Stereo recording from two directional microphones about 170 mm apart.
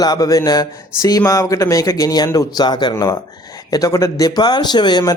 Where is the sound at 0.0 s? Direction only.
20° left (ahead or behind).